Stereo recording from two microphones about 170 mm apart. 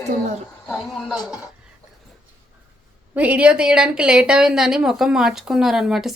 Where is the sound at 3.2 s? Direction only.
10° right (ahead or behind).